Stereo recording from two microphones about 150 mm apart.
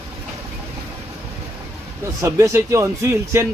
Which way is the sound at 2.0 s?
20° right (ahead or behind).